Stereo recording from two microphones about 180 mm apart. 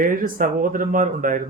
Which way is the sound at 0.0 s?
50° right (ahead or behind).